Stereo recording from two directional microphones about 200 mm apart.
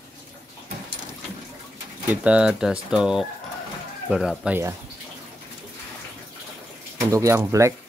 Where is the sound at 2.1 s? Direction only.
5° right (ahead or behind).